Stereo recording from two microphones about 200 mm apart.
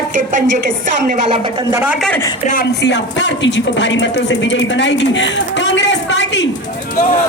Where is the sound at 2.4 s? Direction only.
40° left (ahead or behind).